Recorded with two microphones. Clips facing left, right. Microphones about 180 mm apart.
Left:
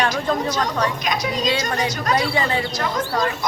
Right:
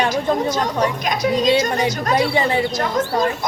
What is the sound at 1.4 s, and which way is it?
A woman's voice, 25° right (ahead or behind).